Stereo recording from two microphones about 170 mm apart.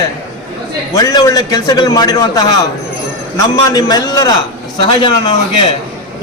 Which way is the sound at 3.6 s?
20° left (ahead or behind).